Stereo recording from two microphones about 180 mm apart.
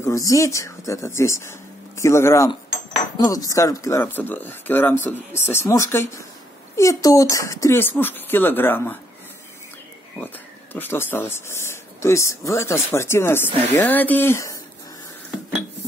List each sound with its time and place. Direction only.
0.0 s speech: 20° left (ahead or behind)
10.2 s speech: 10° left (ahead or behind)